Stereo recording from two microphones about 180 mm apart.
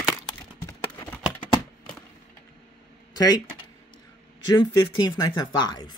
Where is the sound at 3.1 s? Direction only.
20° left (ahead or behind).